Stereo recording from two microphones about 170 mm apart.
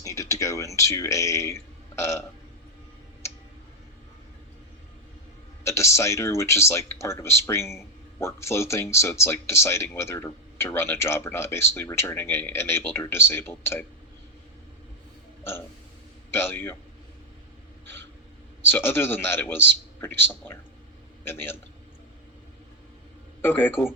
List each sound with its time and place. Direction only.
0.0 s a sound: 20° left (ahead or behind)
5.6 s speech: 15° left (ahead or behind)
16.3 s speech: 15° left (ahead or behind)
18.7 s speech: 15° left (ahead or behind)
23.4 s speech: 10° left (ahead or behind)